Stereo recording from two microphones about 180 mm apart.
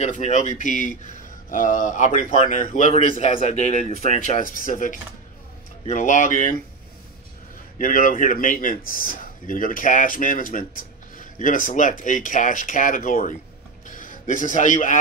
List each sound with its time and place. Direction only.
0.0 s speech: 40° left (ahead or behind)
7.8 s a man's voice: 50° left (ahead or behind)